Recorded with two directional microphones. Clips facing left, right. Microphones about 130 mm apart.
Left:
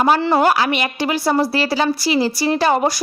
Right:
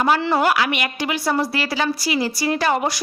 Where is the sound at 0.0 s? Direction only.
35° left (ahead or behind).